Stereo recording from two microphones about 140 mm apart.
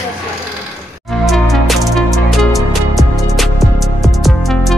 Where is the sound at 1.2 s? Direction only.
Centre (ahead or behind).